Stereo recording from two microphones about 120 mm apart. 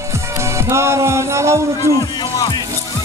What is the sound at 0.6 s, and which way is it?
Speech, 20° right (ahead or behind).